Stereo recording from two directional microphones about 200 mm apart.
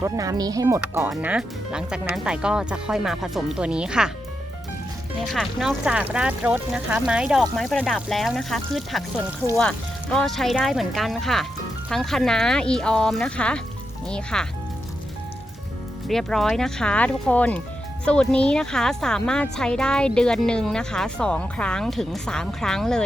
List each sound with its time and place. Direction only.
0.0 s speech: 15° right (ahead or behind)
5.2 s speech: centre (ahead or behind)
16.0 s speech: centre (ahead or behind)